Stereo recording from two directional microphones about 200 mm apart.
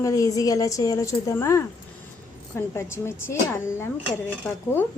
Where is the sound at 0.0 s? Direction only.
15° left (ahead or behind).